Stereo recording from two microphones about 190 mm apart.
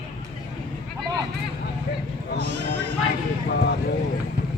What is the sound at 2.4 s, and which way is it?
Sheep, 65° right (ahead or behind).